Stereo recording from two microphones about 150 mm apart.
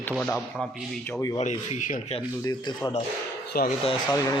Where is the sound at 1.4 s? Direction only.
50° left (ahead or behind).